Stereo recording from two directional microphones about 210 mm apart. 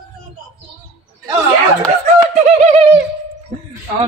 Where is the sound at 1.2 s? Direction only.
15° right (ahead or behind).